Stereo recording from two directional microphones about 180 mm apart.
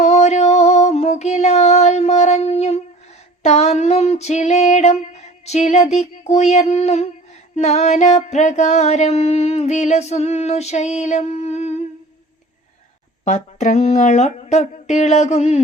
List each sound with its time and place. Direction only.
0.0 s music: 40° left (ahead or behind)
13.2 s music: 40° left (ahead or behind)